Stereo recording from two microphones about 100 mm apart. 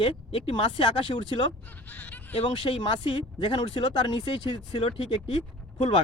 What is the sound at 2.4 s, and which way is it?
Speech, 60° left (ahead or behind).